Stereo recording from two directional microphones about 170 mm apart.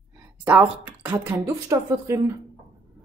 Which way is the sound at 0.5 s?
10° right (ahead or behind).